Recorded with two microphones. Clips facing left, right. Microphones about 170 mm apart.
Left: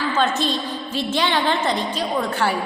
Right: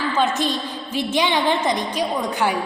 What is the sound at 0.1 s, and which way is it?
A woman's voice, 15° right (ahead or behind).